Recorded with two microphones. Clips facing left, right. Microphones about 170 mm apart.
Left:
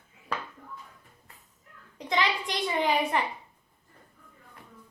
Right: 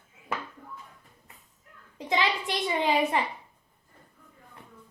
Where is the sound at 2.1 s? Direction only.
20° right (ahead or behind).